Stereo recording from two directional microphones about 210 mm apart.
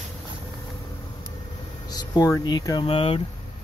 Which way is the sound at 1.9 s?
20° left (ahead or behind).